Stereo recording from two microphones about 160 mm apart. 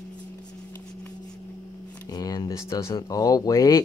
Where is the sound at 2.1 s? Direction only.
25° left (ahead or behind).